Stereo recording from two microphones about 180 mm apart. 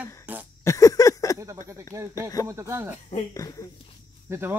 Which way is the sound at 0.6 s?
20° left (ahead or behind).